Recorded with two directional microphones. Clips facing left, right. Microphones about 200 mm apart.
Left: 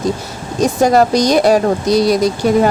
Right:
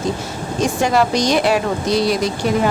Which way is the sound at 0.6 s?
40° left (ahead or behind).